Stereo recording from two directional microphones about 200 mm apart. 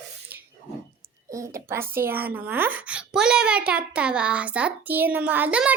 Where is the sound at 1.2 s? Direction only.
15° right (ahead or behind).